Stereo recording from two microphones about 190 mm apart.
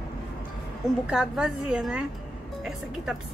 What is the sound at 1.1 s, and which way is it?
A woman's voice, 5° right (ahead or behind).